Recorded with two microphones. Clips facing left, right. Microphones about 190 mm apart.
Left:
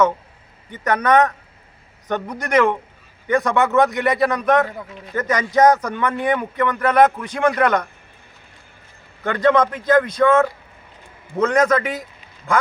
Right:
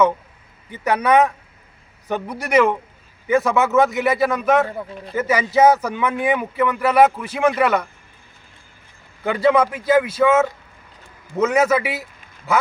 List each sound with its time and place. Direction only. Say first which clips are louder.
0.7 s a man's voice: even; 10° right (ahead or behind)
4.7 s speech: right 4 dB; 30° right (ahead or behind)
5.1 s speech: right 1 dB; 10° right (ahead or behind)
9.2 s speech: even; 10° right (ahead or behind)